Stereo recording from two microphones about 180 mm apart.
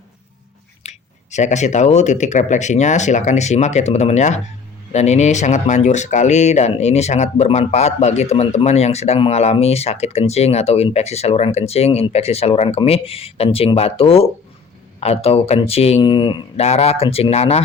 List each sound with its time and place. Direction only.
0.8 s speech: 40° left (ahead or behind)